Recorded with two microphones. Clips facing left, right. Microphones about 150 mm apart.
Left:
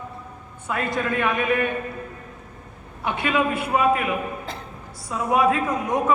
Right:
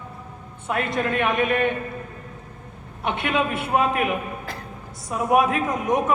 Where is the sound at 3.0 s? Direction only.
20° right (ahead or behind).